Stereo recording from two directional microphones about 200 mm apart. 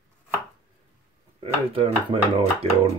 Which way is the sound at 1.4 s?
30° right (ahead or behind).